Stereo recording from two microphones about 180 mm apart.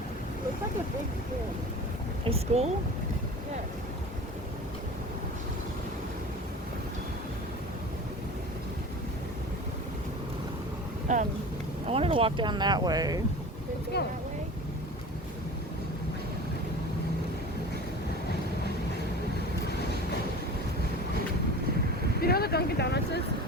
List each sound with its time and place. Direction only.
2.2 s speech: 35° right (ahead or behind)
11.1 s speech: 45° right (ahead or behind)
11.9 s speech: 35° right (ahead or behind)
13.9 s speech: 65° left (ahead or behind)
22.2 s speech: 60° left (ahead or behind)